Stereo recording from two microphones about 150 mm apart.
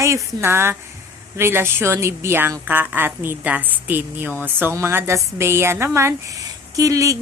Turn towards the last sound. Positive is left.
turn(degrees=-20)  # may be behind; listen again after turning